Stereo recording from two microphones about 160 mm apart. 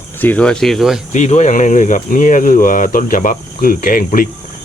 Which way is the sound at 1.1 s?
45° left (ahead or behind).